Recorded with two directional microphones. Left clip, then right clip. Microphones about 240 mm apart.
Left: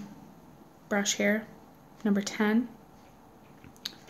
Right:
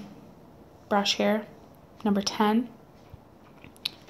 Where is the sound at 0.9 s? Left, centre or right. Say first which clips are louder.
Right 3 dB; centre.